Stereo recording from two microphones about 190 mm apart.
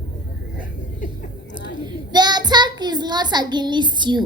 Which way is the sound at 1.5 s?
25° right (ahead or behind).